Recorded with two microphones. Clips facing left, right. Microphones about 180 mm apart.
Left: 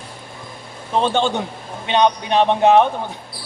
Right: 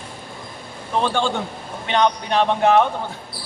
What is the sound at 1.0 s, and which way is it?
A man's voice, 20° left (ahead or behind).